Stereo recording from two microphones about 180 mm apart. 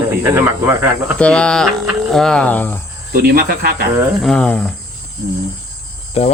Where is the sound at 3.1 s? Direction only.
55° right (ahead or behind).